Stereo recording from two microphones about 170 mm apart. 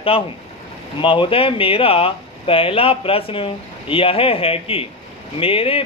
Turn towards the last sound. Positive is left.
turn(degrees=35)  # may be behind; listen again after turning